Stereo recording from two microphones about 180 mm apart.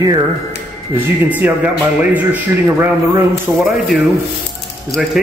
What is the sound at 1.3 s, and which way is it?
Speech, 10° right (ahead or behind).